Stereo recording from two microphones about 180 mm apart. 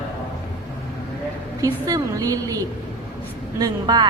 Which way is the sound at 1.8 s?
20° right (ahead or behind).